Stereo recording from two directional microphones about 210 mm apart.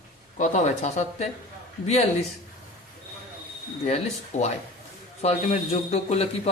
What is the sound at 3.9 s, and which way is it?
A man's voice, 30° left (ahead or behind).